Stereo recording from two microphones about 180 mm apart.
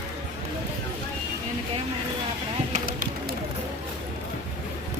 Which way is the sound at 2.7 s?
50° right (ahead or behind).